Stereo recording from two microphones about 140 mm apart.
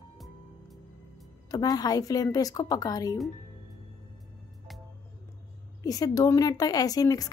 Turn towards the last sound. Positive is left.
turn(degrees=25)  # may be behind; listen again after turning